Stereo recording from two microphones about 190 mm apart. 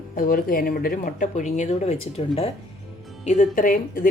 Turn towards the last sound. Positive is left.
turn(degrees=45)  # may be behind; listen again after turning